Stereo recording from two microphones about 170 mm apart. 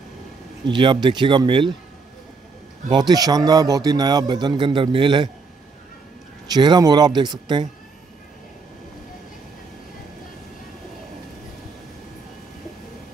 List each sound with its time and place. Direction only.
0.7 s a man's voice: 30° right (ahead or behind)
2.9 s a man's voice: 25° right (ahead or behind)
6.4 s a man's voice: 25° right (ahead or behind)